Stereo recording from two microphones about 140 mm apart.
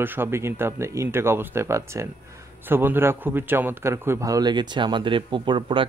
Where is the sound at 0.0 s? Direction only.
15° right (ahead or behind).